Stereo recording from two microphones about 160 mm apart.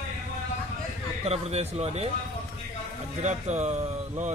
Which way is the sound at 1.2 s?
40° right (ahead or behind).